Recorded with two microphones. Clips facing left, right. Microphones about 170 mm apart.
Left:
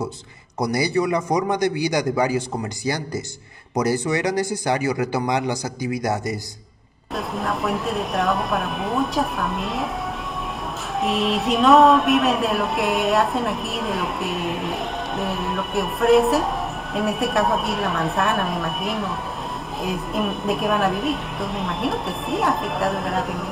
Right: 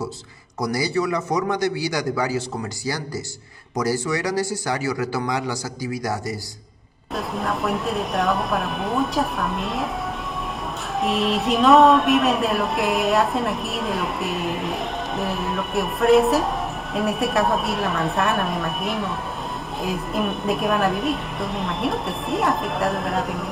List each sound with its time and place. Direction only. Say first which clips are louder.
0.6 s a man's voice: left 2 dB; 20° left (ahead or behind)
3.7 s a man's voice: left 2 dB; 20° left (ahead or behind)
7.2 s speech: even; centre (ahead or behind)
11.0 s speech: even; centre (ahead or behind)